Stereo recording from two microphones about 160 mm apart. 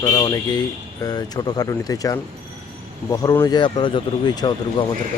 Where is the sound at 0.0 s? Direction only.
20° left (ahead or behind).